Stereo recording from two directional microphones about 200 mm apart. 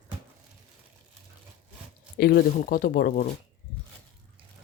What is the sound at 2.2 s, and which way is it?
Speech, 50° left (ahead or behind).